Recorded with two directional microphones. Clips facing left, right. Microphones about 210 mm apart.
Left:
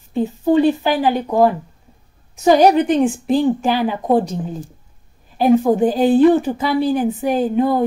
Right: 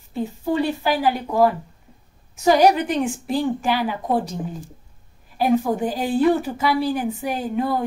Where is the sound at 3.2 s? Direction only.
30° left (ahead or behind).